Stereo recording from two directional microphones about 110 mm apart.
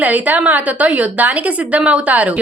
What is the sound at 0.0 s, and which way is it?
A woman's voice, 15° right (ahead or behind).